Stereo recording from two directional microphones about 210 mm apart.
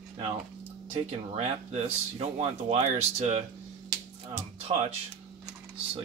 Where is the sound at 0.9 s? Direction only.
30° right (ahead or behind).